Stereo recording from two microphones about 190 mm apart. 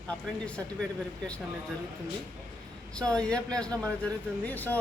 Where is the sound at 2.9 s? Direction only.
5° left (ahead or behind).